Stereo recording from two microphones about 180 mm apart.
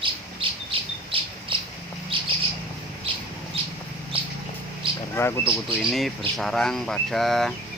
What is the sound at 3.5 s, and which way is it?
Bird, 30° right (ahead or behind).